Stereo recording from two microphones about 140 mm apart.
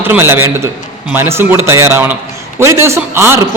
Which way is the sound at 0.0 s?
15° right (ahead or behind).